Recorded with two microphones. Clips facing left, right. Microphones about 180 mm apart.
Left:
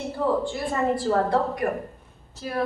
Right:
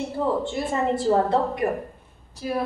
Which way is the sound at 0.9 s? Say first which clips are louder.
Right 4 dB; 25° right (ahead or behind).